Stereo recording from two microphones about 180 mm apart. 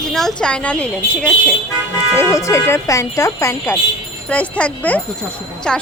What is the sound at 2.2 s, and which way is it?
A woman's voice, 15° left (ahead or behind).